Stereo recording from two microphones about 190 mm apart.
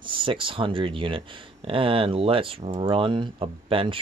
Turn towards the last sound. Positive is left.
turn(degrees=-30)  # may be behind; listen again after turning